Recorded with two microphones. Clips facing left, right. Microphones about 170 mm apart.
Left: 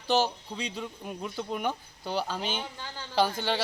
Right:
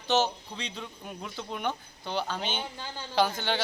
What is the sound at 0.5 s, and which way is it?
Speech, 5° left (ahead or behind).